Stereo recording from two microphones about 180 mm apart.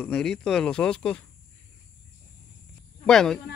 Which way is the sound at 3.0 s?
5° left (ahead or behind).